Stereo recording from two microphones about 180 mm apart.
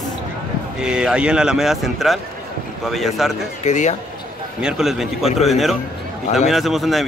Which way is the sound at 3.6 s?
40° left (ahead or behind).